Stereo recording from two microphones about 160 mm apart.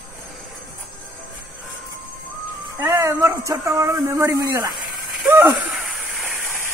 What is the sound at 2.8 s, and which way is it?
Speech, 15° right (ahead or behind).